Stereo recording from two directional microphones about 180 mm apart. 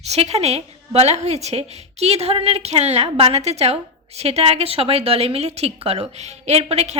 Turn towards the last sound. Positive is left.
turn(degrees=-35)  # may be behind; listen again after turning